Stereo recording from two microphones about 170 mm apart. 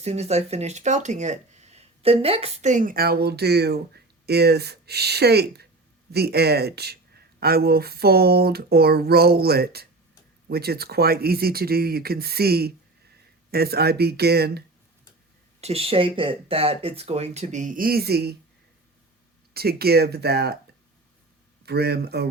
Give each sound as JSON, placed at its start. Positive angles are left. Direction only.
{"t": 0.0, "sound": "speech", "side_deg": -40}
{"t": 15.6, "sound": "speech", "side_deg": -35}
{"t": 19.5, "sound": "speech", "side_deg": -65}
{"t": 21.7, "sound": "speech", "side_deg": -70}